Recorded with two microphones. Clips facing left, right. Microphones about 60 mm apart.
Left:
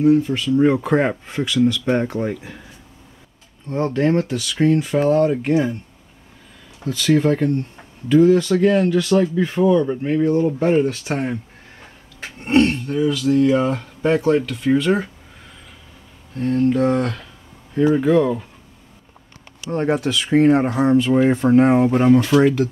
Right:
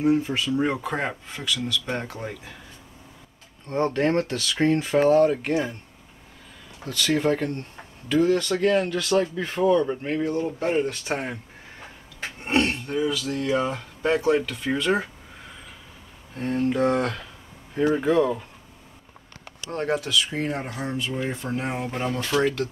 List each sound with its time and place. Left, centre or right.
0.0 s speech: centre
0.7 s speech: centre
3.7 s speech: centre
4.6 s speech: centre
5.1 s speech: centre
6.8 s speech: centre
12.4 s speech: centre
19.7 s speech: centre
20.0 s speech: left
21.2 s speech: left
21.5 s speech: left
21.8 s speech: left; by 22.7 s centre